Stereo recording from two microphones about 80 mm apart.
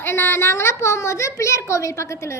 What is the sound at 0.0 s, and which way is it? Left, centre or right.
A child's voice, left.